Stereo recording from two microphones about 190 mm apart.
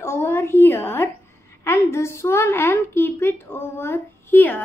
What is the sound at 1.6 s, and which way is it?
A woman's voice, 15° left (ahead or behind).